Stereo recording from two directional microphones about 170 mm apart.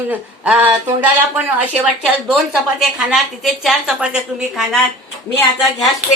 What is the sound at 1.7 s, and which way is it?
A woman's voice, 5° right (ahead or behind).